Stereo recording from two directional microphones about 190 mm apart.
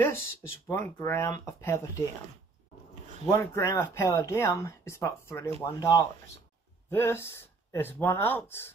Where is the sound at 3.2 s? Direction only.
15° left (ahead or behind).